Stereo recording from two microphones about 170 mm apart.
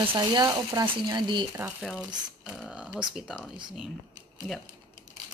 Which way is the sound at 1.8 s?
Centre (ahead or behind).